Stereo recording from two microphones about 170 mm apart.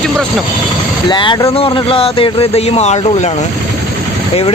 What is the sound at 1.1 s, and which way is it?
Speech, 25° left (ahead or behind).